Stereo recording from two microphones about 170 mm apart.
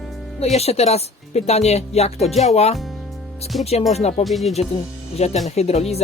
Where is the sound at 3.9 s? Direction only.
40° left (ahead or behind).